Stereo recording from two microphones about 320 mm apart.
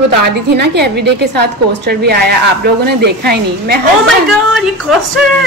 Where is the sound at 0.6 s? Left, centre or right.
Right.